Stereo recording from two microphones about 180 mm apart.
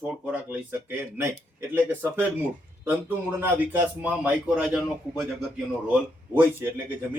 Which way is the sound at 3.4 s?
10° right (ahead or behind).